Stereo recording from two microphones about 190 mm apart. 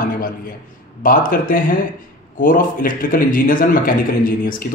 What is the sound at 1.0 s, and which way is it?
A man's voice, 45° left (ahead or behind).